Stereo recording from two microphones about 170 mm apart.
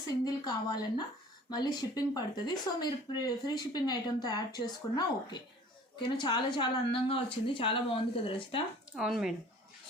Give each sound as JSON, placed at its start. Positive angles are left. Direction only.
{"t": 0.1, "sound": "speech", "side_deg": 20}
{"t": 9.0, "sound": "speech", "side_deg": 0}